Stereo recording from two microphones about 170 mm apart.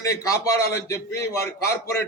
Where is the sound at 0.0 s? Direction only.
20° left (ahead or behind).